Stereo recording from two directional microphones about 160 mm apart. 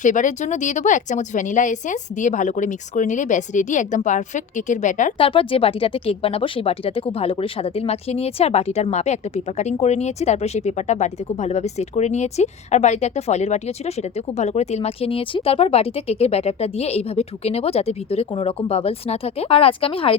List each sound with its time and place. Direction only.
0.0 s a woman's voice: 50° left (ahead or behind)
5.1 s speech: 35° left (ahead or behind)